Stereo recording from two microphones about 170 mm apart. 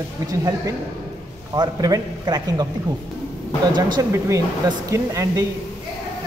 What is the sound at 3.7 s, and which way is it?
Speech, 25° right (ahead or behind).